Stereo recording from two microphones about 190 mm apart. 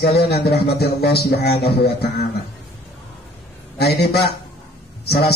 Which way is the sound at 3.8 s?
60° left (ahead or behind).